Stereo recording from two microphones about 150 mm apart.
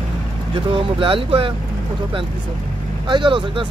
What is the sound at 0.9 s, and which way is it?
Speech, 35° right (ahead or behind).